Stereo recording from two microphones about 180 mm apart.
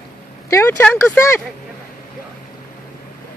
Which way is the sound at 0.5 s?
15° left (ahead or behind).